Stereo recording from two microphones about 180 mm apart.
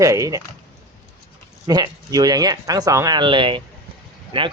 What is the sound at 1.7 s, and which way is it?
Speech, 20° right (ahead or behind).